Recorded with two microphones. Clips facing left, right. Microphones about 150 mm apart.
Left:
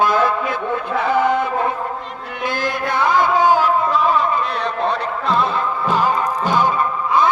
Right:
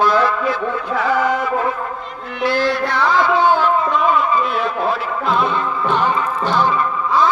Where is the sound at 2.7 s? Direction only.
50° left (ahead or behind).